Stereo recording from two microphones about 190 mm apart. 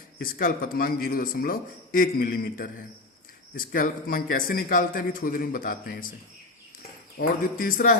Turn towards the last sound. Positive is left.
turn(degrees=45)  # may be behind; listen again after turning